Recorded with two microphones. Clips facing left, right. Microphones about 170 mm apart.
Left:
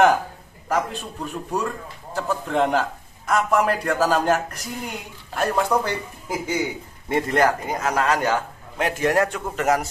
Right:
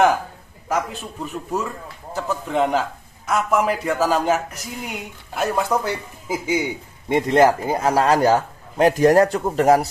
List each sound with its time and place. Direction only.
0.8 s a man's voice: 5° right (ahead or behind)
7.1 s a man's voice: 20° right (ahead or behind)